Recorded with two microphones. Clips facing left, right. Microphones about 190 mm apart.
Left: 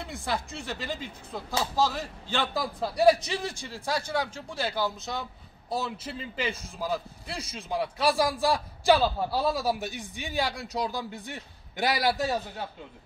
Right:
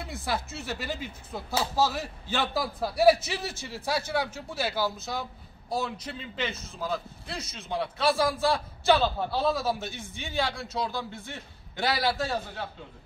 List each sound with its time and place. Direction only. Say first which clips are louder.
0.0 s a man's voice: even; centre (ahead or behind); by 12.6 s 15° left (ahead or behind)